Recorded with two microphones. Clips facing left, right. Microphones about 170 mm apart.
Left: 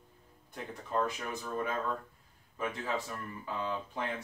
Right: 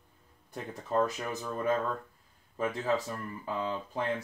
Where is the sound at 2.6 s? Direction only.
40° right (ahead or behind).